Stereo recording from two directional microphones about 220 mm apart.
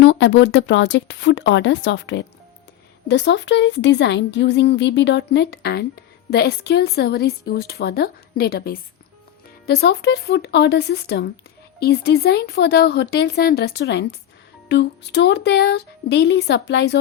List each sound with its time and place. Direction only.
0.0 s a woman's voice: 55° left (ahead or behind)